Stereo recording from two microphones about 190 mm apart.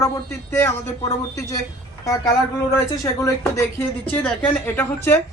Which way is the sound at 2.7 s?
15° left (ahead or behind).